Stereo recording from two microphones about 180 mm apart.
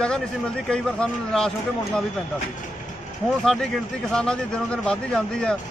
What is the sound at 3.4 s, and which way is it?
Speech, centre (ahead or behind).